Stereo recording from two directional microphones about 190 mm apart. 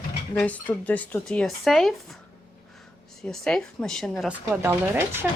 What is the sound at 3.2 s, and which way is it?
Speech, 5° left (ahead or behind).